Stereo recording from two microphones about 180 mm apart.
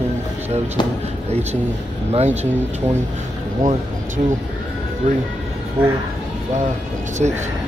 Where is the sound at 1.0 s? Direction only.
35° right (ahead or behind).